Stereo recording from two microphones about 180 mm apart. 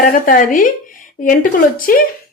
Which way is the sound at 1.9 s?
50° left (ahead or behind).